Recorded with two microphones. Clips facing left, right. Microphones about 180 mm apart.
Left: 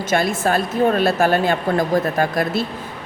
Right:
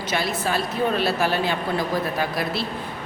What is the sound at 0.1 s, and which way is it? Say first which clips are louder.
A woman's voice: left 6 dB; 50° left (ahead or behind).